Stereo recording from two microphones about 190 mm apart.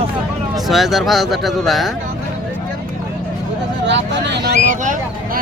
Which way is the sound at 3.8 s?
70° right (ahead or behind).